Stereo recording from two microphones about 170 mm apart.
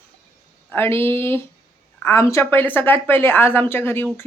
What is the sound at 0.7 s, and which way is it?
Speech, 15° left (ahead or behind).